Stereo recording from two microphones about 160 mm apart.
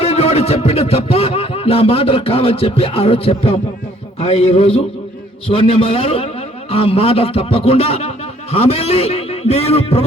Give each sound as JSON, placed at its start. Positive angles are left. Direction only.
{"t": 0.0, "sound": "a man's voice", "side_deg": 40}